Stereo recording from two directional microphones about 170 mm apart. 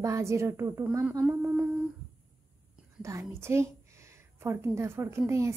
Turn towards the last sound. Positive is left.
turn(degrees=-15)  # may be behind; listen again after turning